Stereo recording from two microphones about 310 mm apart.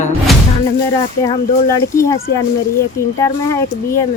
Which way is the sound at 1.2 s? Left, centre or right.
Centre.